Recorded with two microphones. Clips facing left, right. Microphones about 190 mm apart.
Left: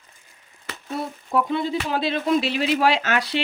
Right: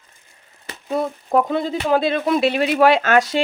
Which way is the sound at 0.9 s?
45° right (ahead or behind).